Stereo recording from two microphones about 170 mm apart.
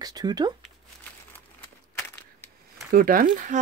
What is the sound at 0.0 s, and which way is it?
Speech, 25° right (ahead or behind).